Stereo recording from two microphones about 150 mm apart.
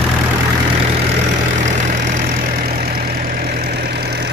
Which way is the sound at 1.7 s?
55° right (ahead or behind).